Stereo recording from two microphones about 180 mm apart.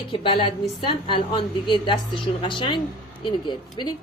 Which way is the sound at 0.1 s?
30° left (ahead or behind).